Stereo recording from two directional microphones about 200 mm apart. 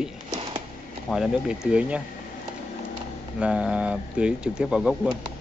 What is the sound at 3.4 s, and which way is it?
Speech, 5° right (ahead or behind).